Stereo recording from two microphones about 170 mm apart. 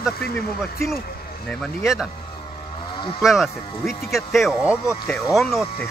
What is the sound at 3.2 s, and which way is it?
Speech, centre (ahead or behind).